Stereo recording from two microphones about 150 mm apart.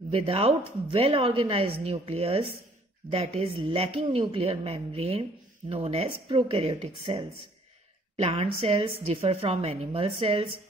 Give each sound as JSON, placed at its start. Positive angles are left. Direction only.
{"t": 0.1, "sound": "a woman's voice", "side_deg": -40}